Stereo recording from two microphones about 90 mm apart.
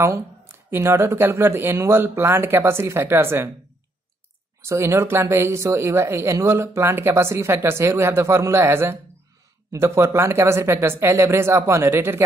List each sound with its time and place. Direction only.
0.0 s speech: 30° right (ahead or behind)
4.6 s speech: 30° right (ahead or behind)